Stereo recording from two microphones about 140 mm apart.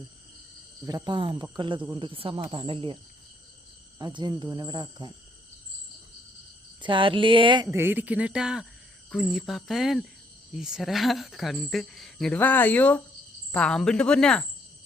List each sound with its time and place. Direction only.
0.9 s speech: 30° right (ahead or behind)
6.8 s speech: 35° right (ahead or behind)
7.7 s speech: 15° right (ahead or behind); by 14.4 s 5° left (ahead or behind)